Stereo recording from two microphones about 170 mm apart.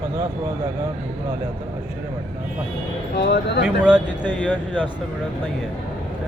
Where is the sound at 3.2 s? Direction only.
75° left (ahead or behind).